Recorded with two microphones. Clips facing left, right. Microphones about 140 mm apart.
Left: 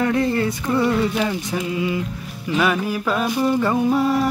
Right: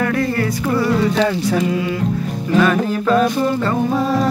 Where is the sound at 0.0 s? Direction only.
25° left (ahead or behind).